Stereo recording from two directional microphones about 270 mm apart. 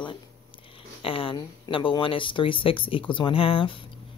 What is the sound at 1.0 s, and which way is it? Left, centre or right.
Speech, centre.